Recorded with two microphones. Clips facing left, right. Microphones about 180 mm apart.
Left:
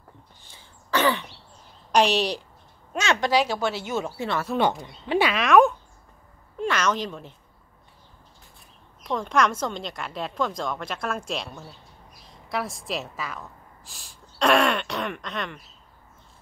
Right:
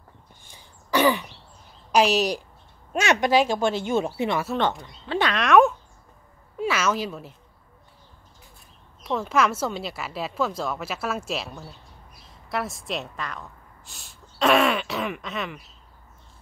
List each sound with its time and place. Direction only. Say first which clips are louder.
0.4 s throat clearing: right 1 dB; 15° right (ahead or behind)
1.9 s a woman's voice: right 1 dB; 5° right (ahead or behind)
2.9 s a woman's voice: right 2 dB; 20° right (ahead or behind)
3.6 s speech: right 3 dB; 10° left (ahead or behind)
3.9 s speech: right 4 dB; 20° right (ahead or behind)
4.8 s speech: left 2 dB; 15° left (ahead or behind); by 7.3 s 5° right (ahead or behind)
9.0 s a woman's voice: even; 5° right (ahead or behind)